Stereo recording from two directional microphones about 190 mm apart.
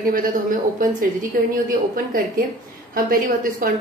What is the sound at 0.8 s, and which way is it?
Speech, 45° right (ahead or behind).